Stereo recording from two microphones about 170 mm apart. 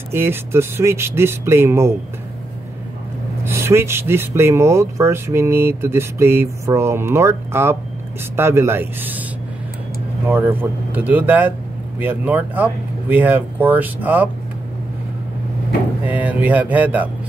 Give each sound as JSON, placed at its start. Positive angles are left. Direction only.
{"t": 0.1, "sound": "speech", "side_deg": -15}
{"t": 3.4, "sound": "speech", "side_deg": -15}
{"t": 10.2, "sound": "speech", "side_deg": -10}
{"t": 16.1, "sound": "speech", "side_deg": -10}